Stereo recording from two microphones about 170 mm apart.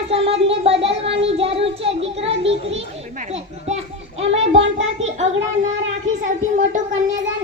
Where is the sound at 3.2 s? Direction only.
40° right (ahead or behind).